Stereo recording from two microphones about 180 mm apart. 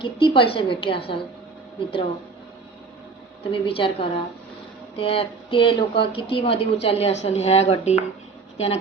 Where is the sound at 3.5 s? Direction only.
30° left (ahead or behind).